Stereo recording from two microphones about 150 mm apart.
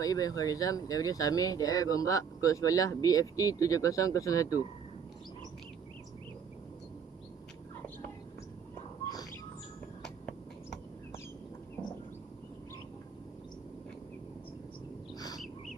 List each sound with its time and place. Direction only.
0.0 s speech: 25° left (ahead or behind)